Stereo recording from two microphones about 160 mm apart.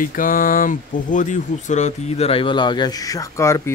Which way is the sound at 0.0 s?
60° left (ahead or behind).